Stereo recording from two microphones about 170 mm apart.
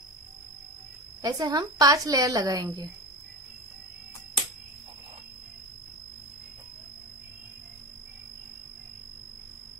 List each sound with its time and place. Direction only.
1.2 s a woman's voice: 25° right (ahead or behind)